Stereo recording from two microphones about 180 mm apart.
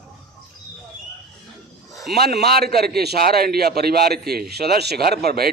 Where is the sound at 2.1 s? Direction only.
65° right (ahead or behind).